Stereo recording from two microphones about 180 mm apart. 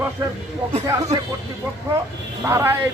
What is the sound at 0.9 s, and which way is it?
Speech, 15° right (ahead or behind).